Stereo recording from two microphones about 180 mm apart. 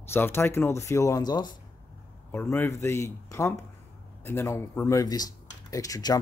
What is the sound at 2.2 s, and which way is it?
Speech, 10° left (ahead or behind).